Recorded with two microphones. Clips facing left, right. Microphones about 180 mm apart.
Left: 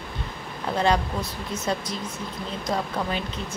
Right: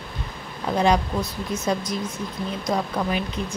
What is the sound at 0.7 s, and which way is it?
Speech, 15° right (ahead or behind).